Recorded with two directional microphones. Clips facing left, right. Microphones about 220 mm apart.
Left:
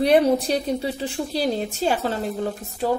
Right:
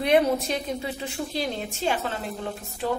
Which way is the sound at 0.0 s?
35° left (ahead or behind).